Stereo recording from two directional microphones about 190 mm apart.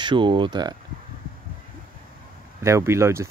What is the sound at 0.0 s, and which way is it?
Speech, 25° right (ahead or behind).